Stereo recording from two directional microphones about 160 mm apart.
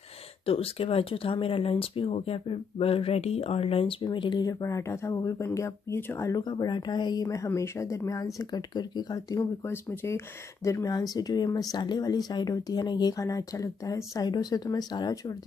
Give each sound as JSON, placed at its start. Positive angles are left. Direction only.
{"t": 0.5, "sound": "speech", "side_deg": 35}